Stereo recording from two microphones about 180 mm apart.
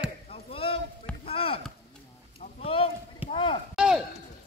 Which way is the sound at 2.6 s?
30° left (ahead or behind).